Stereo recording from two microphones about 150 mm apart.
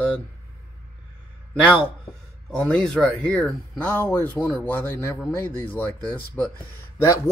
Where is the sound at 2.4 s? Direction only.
5° left (ahead or behind).